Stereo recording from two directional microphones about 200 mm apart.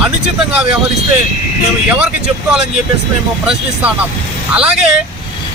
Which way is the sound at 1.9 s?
5° right (ahead or behind).